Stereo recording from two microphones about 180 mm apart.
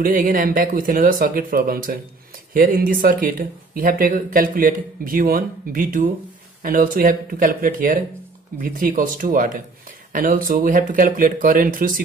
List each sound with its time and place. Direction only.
0.0 s speech: 50° right (ahead or behind)